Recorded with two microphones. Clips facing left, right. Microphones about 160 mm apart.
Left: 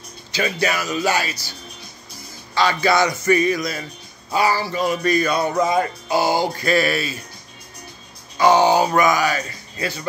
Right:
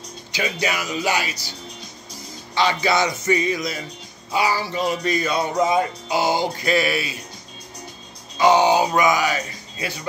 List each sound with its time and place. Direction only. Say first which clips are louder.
0.3 s speech: left 3 dB; 15° right (ahead or behind)
2.5 s speech: left 2 dB; 20° right (ahead or behind)
8.4 s speech: left 1 dB; 20° right (ahead or behind)